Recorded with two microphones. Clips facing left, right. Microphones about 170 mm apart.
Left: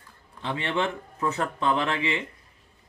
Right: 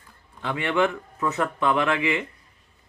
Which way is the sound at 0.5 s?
30° left (ahead or behind).